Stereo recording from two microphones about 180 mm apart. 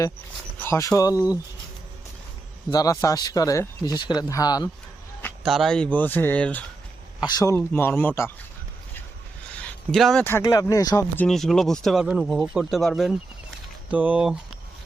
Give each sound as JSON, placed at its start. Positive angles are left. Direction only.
{"t": 0.6, "sound": "speech", "side_deg": 15}
{"t": 2.6, "sound": "speech", "side_deg": 20}
{"t": 5.4, "sound": "speech", "side_deg": 0}
{"t": 7.3, "sound": "speech", "side_deg": 20}
{"t": 9.9, "sound": "speech", "side_deg": 0}
{"t": 10.2, "sound": "speech", "side_deg": 15}
{"t": 11.3, "sound": "speech", "side_deg": 0}